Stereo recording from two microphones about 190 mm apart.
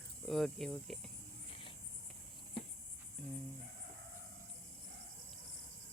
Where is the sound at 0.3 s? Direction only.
Centre (ahead or behind).